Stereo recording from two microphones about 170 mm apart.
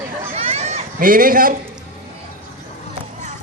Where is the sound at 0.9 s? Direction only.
55° right (ahead or behind).